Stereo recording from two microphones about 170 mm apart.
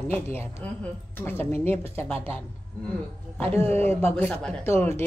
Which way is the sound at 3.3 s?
10° left (ahead or behind).